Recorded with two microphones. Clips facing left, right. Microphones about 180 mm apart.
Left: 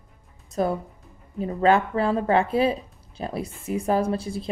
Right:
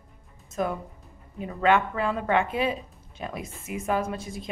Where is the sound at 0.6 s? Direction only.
35° left (ahead or behind).